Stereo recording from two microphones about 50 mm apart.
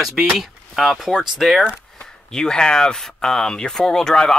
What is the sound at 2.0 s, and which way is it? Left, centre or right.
Speech, centre.